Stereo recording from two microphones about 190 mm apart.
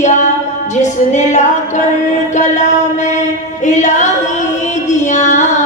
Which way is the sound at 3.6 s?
40° left (ahead or behind).